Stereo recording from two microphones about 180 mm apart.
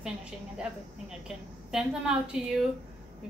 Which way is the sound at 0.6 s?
5° right (ahead or behind).